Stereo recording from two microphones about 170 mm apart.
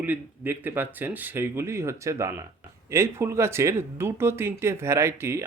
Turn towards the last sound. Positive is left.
turn(degrees=-15)  # may be behind; listen again after turning